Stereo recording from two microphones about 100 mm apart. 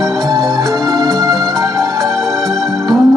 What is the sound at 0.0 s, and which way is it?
Organ, 35° right (ahead or behind).